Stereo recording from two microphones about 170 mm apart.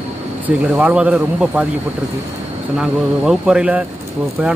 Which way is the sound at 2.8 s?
5° right (ahead or behind).